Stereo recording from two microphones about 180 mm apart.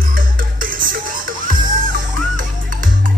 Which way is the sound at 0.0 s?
50° right (ahead or behind).